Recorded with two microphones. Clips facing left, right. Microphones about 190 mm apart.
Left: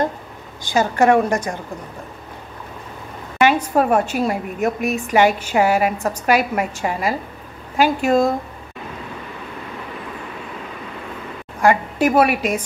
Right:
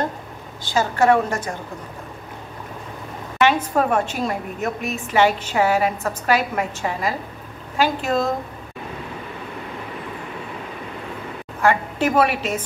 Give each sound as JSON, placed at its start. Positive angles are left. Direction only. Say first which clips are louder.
{"t": 0.7, "sound": "a woman's voice", "louder": "left 2 dB", "side_deg": 15}
{"t": 3.4, "sound": "a woman's voice", "louder": "left 3 dB", "side_deg": 10}
{"t": 11.6, "sound": "a woman's voice", "louder": "left 3 dB", "side_deg": 10}